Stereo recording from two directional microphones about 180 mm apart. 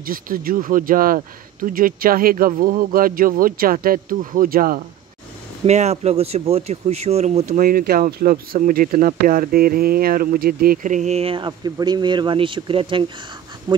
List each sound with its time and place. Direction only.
0.0 s speech: 50° right (ahead or behind)
5.7 s speech: 35° right (ahead or behind)